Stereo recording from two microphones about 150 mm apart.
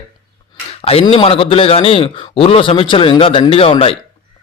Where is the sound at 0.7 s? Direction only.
40° left (ahead or behind).